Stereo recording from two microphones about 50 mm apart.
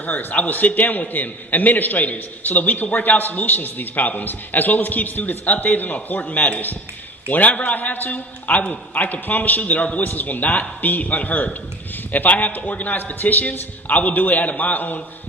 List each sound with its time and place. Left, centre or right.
0.0 s a man's voice: left
10.0 s a man's voice: left